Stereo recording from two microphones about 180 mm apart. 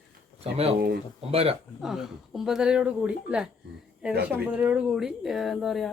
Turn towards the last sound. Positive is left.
turn(degrees=0)  # may be behind; listen again after turning